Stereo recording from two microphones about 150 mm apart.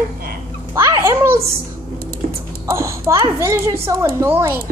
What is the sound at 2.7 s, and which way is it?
A child's voice, 20° right (ahead or behind).